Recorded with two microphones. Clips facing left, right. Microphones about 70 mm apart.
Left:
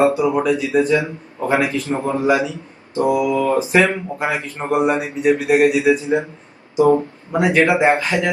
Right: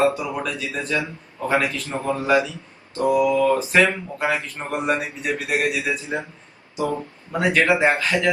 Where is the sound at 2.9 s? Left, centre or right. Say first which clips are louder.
Left 1 dB; left.